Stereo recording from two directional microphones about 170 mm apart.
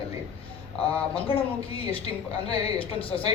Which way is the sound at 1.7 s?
35° left (ahead or behind).